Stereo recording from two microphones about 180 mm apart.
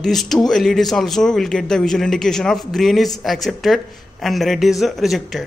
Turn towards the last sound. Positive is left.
turn(degrees=0)  # may be behind; listen again after turning